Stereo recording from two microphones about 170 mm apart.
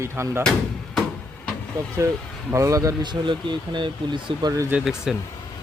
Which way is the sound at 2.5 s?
20° right (ahead or behind).